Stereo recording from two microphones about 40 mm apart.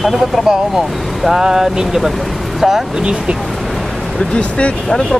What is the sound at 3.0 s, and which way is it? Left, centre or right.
Speech, right.